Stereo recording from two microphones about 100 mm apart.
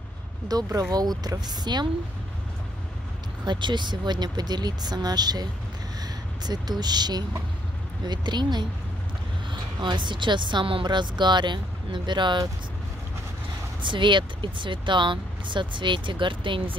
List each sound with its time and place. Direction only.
0.5 s a woman's voice: 40° right (ahead or behind)
3.4 s a woman's voice: 50° right (ahead or behind)
13.7 s a woman's voice: 55° right (ahead or behind)